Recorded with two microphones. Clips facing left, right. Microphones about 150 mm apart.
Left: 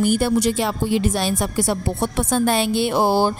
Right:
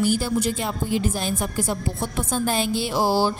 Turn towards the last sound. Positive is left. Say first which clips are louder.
# left 3 dB
turn(degrees=55)  # may be behind; listen again after turning